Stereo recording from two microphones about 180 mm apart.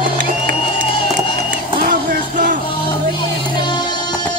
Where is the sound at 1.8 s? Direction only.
50° right (ahead or behind).